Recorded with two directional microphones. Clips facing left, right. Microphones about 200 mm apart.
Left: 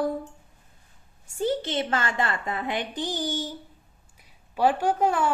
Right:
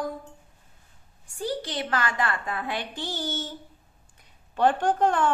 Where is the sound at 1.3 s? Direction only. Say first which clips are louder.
Left 4 dB; 25° left (ahead or behind).